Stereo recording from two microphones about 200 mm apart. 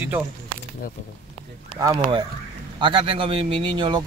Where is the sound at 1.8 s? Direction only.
20° right (ahead or behind).